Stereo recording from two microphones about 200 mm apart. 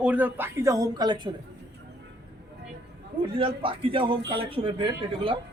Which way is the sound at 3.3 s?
25° right (ahead or behind).